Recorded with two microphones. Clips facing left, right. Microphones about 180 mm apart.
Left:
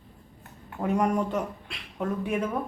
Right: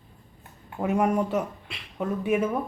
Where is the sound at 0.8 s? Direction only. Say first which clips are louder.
Right 1 dB; 5° right (ahead or behind).